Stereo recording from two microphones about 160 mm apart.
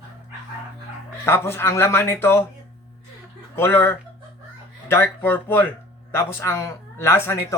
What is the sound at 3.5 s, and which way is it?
A man's voice, 15° left (ahead or behind).